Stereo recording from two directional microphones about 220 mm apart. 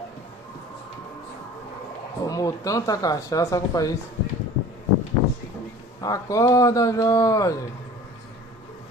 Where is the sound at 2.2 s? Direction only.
15° left (ahead or behind).